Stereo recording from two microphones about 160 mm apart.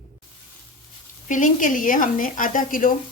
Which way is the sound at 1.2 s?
55° left (ahead or behind).